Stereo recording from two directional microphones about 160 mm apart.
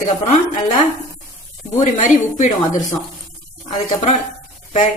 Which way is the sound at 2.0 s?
50° left (ahead or behind).